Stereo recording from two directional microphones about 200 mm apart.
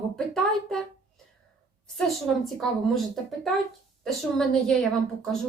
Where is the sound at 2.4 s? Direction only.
Centre (ahead or behind).